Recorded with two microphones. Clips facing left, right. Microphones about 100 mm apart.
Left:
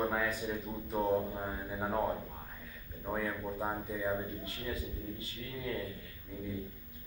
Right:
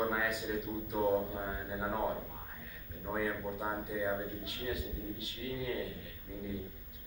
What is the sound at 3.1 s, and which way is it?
Speech, 5° right (ahead or behind).